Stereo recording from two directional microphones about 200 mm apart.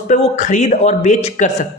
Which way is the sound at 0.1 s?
35° left (ahead or behind).